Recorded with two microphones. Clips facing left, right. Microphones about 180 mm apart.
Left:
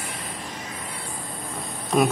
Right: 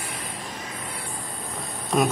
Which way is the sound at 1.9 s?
Centre (ahead or behind).